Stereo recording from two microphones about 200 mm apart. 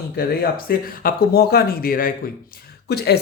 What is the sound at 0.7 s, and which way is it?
Speech, 50° left (ahead or behind).